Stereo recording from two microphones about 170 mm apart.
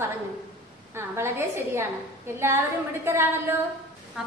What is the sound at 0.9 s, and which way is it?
A woman's voice, 15° right (ahead or behind).